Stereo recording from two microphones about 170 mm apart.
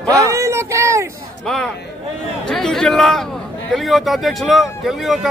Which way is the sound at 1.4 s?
Centre (ahead or behind).